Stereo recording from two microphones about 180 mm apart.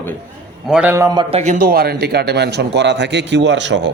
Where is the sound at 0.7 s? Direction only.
10° right (ahead or behind).